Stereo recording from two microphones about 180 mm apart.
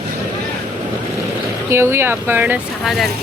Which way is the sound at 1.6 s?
15° right (ahead or behind).